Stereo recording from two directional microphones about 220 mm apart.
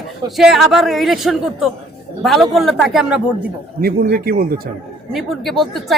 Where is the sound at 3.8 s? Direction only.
40° right (ahead or behind).